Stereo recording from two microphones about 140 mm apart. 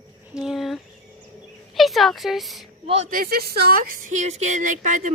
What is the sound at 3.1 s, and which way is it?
Speech, 90° right.